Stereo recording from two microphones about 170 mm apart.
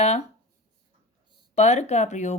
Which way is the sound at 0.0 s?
40° left (ahead or behind).